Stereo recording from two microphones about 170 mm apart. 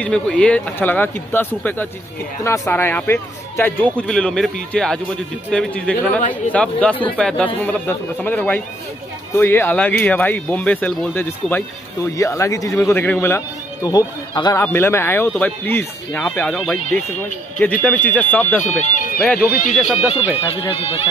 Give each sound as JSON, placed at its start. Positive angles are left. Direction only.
{"t": 0.0, "sound": "speech", "side_deg": 5}
{"t": 13.8, "sound": "speech", "side_deg": 25}
{"t": 18.6, "sound": "speech", "side_deg": 45}
{"t": 19.2, "sound": "speech", "side_deg": 5}
{"t": 20.4, "sound": "speech", "side_deg": 30}